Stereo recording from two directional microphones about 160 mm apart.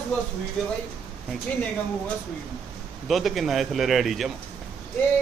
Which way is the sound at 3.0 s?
Centre (ahead or behind).